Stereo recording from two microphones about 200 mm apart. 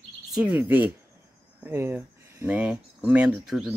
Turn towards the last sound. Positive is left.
turn(degrees=-5)  # may be behind; listen again after turning